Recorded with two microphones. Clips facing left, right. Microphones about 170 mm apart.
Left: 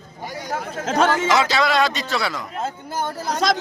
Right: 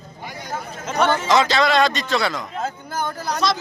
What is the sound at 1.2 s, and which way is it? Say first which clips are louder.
A man's voice: right 1 dB; 5° left (ahead or behind).